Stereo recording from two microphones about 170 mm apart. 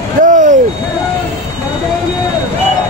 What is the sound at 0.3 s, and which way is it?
Vehicle, 50° right (ahead or behind).